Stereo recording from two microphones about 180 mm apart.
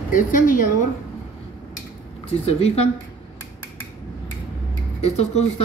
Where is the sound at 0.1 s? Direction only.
50° left (ahead or behind).